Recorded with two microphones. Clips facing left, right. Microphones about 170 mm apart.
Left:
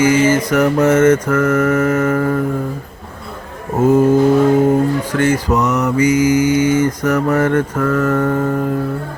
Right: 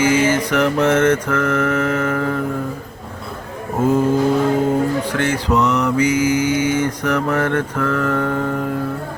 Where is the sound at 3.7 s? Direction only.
10° left (ahead or behind).